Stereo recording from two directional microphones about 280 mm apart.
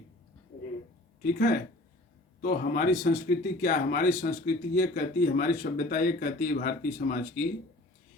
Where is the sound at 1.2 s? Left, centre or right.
Left.